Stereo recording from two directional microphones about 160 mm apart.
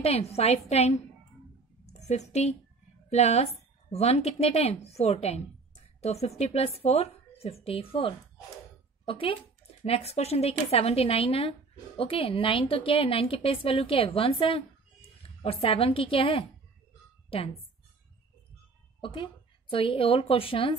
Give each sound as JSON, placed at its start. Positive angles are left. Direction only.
{"t": 0.0, "sound": "a woman's voice", "side_deg": 40}
{"t": 2.0, "sound": "a woman's voice", "side_deg": 45}
{"t": 15.2, "sound": "a sound", "side_deg": 35}
{"t": 15.6, "sound": "a woman's voice", "side_deg": 35}
{"t": 18.9, "sound": "a woman's voice", "side_deg": 30}